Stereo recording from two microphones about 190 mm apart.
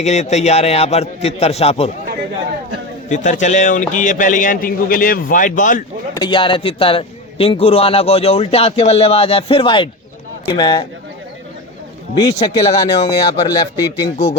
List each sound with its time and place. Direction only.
0.0 s a man's voice: 35° left (ahead or behind)
3.1 s a man's voice: 40° left (ahead or behind)
6.1 s a man's voice: 25° left (ahead or behind)
12.2 s speech: 20° left (ahead or behind)